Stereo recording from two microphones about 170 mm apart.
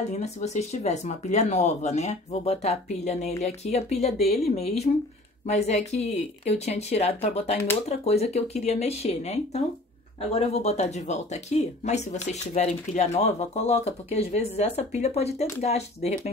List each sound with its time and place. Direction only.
0.1 s speech: 40° left (ahead or behind)